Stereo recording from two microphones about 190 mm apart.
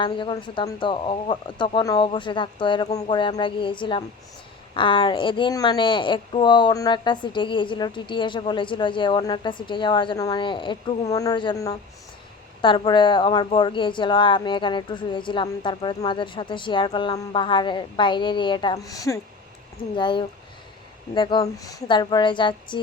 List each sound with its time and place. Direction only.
0.0 s a woman's voice: 25° left (ahead or behind)